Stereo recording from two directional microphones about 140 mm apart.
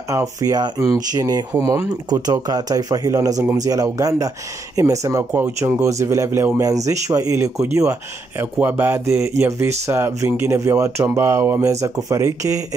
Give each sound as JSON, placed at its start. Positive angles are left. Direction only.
{"t": 0.1, "sound": "speech", "side_deg": -25}